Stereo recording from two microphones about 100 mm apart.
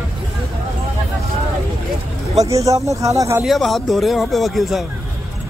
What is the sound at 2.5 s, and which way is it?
Speech, 35° right (ahead or behind).